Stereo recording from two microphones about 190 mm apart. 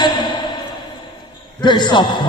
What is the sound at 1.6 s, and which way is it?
Speech, 25° left (ahead or behind).